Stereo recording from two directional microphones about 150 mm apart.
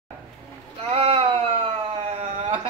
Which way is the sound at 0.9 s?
40° right (ahead or behind).